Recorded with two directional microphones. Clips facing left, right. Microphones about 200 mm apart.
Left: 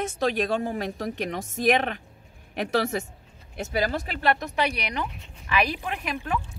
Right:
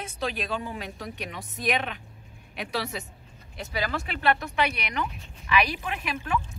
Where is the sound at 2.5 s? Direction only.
50° left (ahead or behind).